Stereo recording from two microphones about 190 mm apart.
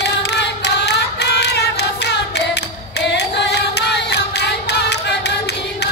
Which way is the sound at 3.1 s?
65° left (ahead or behind).